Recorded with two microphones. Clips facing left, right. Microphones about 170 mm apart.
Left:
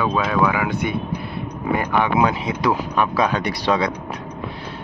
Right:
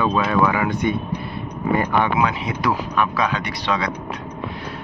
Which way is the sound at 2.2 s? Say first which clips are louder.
Left 2 dB; 25° left (ahead or behind).